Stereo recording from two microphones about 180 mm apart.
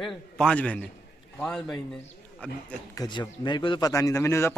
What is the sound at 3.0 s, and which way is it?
A man's voice, 25° left (ahead or behind).